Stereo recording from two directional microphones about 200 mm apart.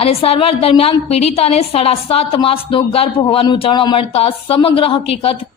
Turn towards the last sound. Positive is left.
turn(degrees=25)  # may be behind; listen again after turning